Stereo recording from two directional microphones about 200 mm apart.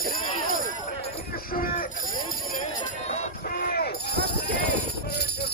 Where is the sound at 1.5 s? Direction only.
45° left (ahead or behind).